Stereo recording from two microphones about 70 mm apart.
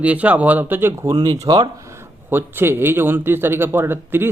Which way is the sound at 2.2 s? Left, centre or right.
Right.